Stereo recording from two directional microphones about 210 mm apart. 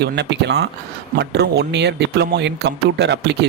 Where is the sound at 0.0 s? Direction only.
55° right (ahead or behind).